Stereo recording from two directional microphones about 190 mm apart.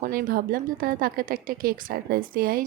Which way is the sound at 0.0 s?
45° right (ahead or behind).